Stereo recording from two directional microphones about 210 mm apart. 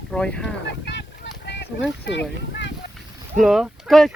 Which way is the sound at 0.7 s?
55° left (ahead or behind).